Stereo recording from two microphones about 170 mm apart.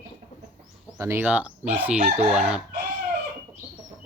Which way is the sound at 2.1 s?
5° right (ahead or behind).